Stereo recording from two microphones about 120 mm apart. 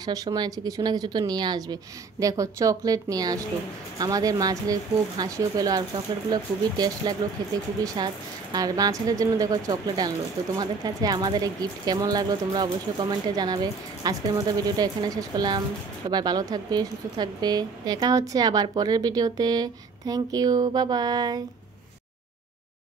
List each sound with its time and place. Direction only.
0.0 s a woman's voice: 30° right (ahead or behind)